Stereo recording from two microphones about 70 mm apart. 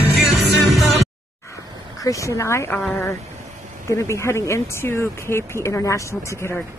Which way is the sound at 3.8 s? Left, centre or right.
Left.